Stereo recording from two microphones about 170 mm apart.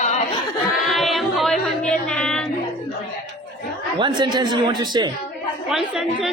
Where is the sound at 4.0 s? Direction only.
25° right (ahead or behind).